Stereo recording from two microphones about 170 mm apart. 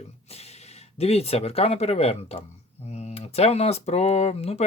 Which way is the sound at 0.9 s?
35° left (ahead or behind).